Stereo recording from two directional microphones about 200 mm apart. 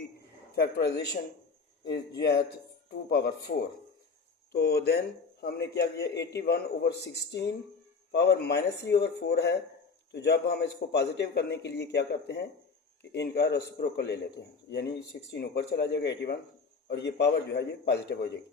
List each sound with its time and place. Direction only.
0.5 s a man's voice: 55° left (ahead or behind)
8.1 s a man's voice: 55° left (ahead or behind)